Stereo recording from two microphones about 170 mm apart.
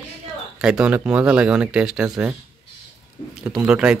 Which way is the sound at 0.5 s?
5° right (ahead or behind).